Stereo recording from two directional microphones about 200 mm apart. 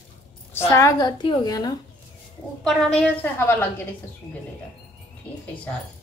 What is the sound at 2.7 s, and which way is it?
A woman's voice, centre (ahead or behind).